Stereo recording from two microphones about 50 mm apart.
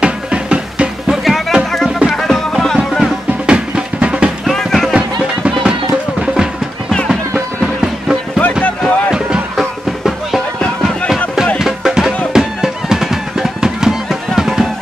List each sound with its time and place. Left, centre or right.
0.0 s music: right
1.1 s music: centre
3.4 s music: centre
4.5 s music: centre
7.6 s music: centre
8.6 s a sound: left
9.6 s music: centre
11.5 s music: centre